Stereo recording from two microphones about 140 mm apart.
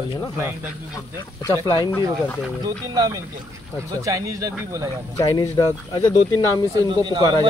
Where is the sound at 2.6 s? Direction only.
30° right (ahead or behind).